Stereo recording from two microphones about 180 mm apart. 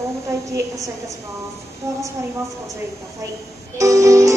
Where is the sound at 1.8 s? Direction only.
20° right (ahead or behind).